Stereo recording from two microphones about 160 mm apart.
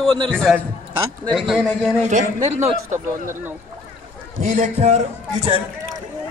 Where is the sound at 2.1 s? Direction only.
45° right (ahead or behind).